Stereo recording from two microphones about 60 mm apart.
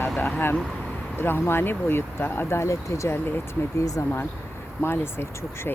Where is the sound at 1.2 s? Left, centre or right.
Left.